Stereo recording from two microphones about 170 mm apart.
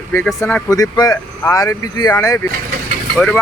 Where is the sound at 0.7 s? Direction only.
20° left (ahead or behind).